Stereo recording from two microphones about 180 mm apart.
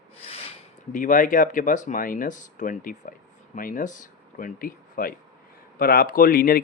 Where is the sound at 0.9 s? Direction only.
45° left (ahead or behind).